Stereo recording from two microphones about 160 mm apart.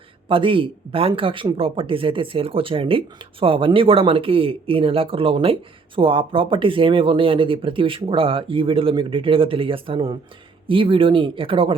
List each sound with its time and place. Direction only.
0.3 s speech: 35° right (ahead or behind)